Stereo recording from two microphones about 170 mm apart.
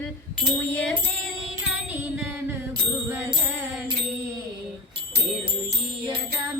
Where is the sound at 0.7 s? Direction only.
10° left (ahead or behind).